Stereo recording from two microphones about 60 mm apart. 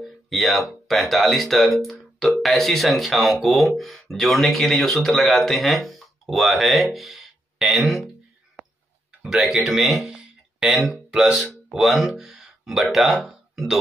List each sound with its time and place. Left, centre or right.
0.0 s speech: centre
8.6 s tick-tock: right
9.2 s speech: centre